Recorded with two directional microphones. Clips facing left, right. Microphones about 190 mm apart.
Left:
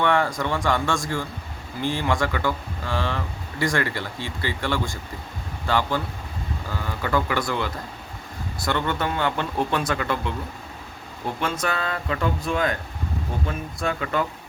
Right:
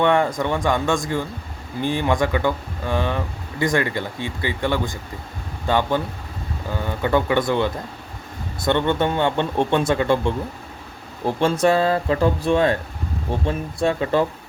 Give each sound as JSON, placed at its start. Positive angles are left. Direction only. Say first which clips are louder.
{"t": 0.0, "sound": "speech", "louder": "right 4 dB", "side_deg": -20}